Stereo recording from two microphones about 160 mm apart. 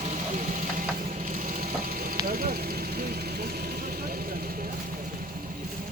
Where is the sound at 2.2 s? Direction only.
65° right (ahead or behind).